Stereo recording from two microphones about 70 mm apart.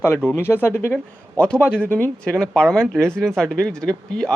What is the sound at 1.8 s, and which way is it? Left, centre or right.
Speech, left.